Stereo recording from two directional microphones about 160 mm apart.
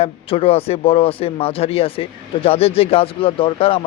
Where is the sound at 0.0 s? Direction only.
35° left (ahead or behind).